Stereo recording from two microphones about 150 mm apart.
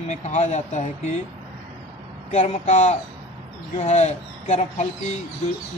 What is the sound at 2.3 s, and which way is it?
Speech, 50° left (ahead or behind).